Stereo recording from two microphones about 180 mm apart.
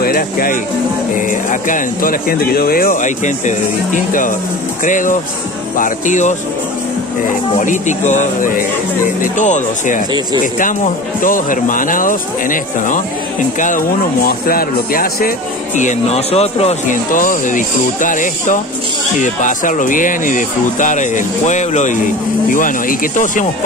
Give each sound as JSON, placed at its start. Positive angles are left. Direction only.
{"t": 0.0, "sound": "music", "side_deg": 55}
{"t": 1.1, "sound": "speech", "side_deg": 45}
{"t": 7.6, "sound": "speech", "side_deg": 45}
{"t": 11.1, "sound": "speech", "side_deg": 50}